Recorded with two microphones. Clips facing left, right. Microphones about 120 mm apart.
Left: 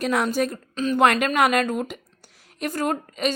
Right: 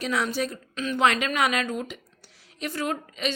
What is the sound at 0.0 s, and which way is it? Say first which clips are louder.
A woman's voice: left 5 dB; 50° left (ahead or behind).